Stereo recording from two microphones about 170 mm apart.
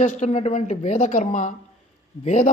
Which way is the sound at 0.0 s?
45° left (ahead or behind).